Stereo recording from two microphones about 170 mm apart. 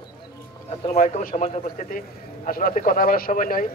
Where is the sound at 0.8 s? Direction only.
40° left (ahead or behind).